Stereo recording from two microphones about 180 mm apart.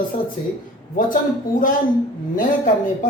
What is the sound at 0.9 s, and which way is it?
Speech, 50° left (ahead or behind).